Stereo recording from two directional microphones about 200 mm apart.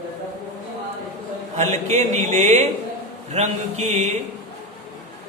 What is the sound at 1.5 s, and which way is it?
A man's voice, 35° right (ahead or behind).